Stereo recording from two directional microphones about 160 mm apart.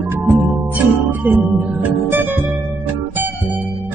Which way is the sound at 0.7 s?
10° right (ahead or behind).